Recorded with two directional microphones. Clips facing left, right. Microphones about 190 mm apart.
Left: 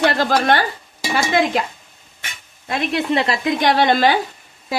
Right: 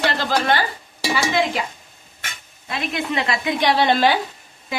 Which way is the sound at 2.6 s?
40° left (ahead or behind).